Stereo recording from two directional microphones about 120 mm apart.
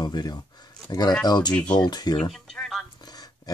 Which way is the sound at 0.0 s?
35° left (ahead or behind).